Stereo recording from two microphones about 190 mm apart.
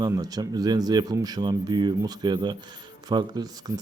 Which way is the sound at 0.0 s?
20° right (ahead or behind).